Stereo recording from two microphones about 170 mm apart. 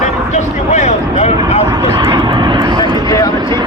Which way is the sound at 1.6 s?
25° right (ahead or behind).